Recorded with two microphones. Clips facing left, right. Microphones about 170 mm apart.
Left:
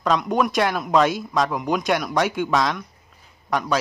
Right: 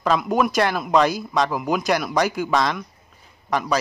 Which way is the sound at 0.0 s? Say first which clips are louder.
Right 1 dB; 5° right (ahead or behind).